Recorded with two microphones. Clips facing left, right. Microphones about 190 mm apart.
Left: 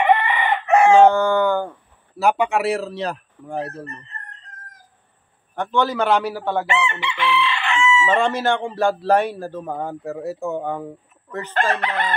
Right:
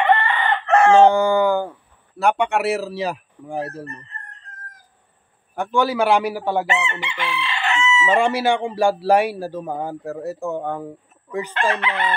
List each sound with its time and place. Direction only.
0.0 s chicken: 10° left (ahead or behind)
1.0 s a man's voice: 10° right (ahead or behind)
2.1 s speech: centre (ahead or behind)
5.5 s a man's voice: 10° right (ahead or behind)
6.7 s chicken: 40° right (ahead or behind)
7.7 s chicken: 20° right (ahead or behind)
8.1 s a man's voice: 10° right (ahead or behind)
11.5 s crowing: 40° left (ahead or behind)